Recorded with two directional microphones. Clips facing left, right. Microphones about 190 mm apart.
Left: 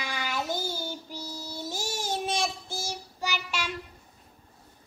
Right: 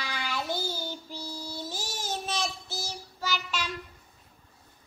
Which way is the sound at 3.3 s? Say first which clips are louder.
Right 1 dB; 10° left (ahead or behind).